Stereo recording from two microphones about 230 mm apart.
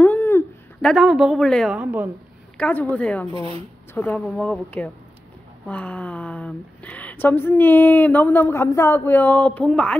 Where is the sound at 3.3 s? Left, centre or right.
Right.